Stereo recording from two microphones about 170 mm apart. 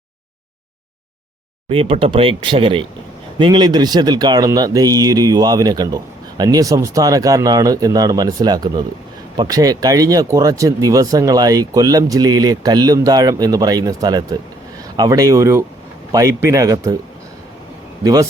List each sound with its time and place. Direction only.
1.7 s speech: 35° right (ahead or behind)
18.0 s speech: 20° right (ahead or behind)